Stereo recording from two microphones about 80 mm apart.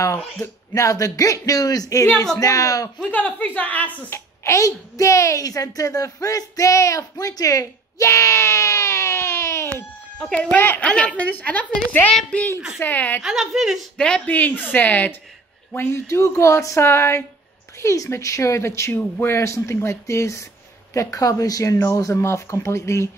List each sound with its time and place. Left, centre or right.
0.0 s speech: left
3.1 s a woman's voice: centre
4.4 s a woman's voice: left
10.5 s a woman's voice: left
12.1 s speech: centre
12.7 s a woman's voice: left
13.2 s a woman's voice: centre
13.9 s speech: centre
14.2 s a woman's voice: left
15.7 s speech: left
17.7 s speech: left
21.7 s speech: left